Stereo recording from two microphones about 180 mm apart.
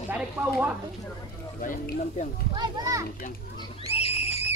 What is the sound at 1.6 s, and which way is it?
Speech, 50° left (ahead or behind).